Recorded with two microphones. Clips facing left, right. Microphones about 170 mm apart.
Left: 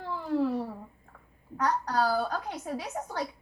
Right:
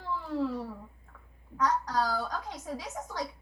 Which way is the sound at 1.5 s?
65° left (ahead or behind).